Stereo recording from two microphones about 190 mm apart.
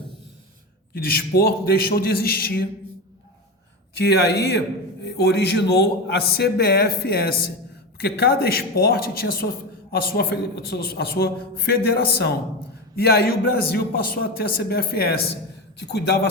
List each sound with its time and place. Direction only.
0.9 s a man's voice: 55° left (ahead or behind)
3.9 s a man's voice: 60° left (ahead or behind)